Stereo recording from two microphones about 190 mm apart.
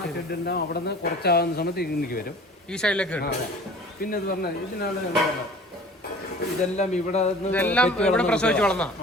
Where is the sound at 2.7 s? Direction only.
5° left (ahead or behind).